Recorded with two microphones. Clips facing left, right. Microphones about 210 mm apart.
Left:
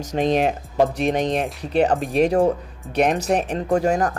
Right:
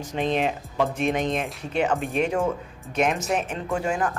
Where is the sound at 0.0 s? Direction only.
40° left (ahead or behind).